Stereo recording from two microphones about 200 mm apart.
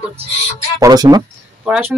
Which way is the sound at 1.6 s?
5° right (ahead or behind).